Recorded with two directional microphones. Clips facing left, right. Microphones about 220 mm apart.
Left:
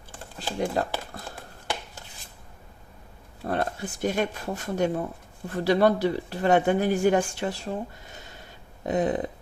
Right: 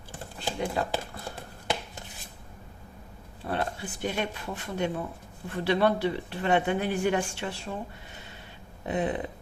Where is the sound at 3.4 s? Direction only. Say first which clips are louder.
Left 3 dB; 45° left (ahead or behind).